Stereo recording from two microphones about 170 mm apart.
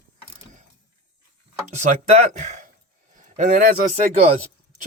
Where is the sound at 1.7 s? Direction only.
40° right (ahead or behind).